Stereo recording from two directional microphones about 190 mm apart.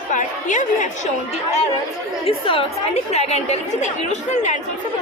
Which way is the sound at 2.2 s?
30° left (ahead or behind).